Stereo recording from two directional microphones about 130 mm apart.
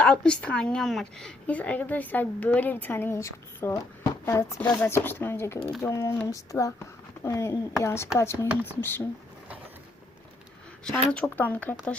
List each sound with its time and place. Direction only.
0.0 s a woman's voice: 5° left (ahead or behind)
11.1 s a woman's voice: 10° left (ahead or behind)